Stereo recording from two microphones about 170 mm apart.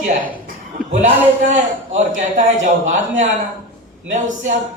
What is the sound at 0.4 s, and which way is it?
A man's voice, 45° right (ahead or behind).